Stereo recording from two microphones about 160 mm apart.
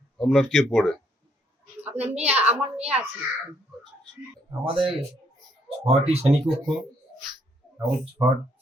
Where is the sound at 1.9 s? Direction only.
45° right (ahead or behind).